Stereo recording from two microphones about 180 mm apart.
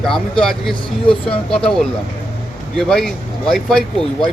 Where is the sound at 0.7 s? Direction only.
30° left (ahead or behind).